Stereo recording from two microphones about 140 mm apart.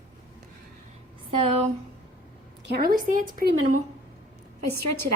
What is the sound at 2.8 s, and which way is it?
Speech, 85° right.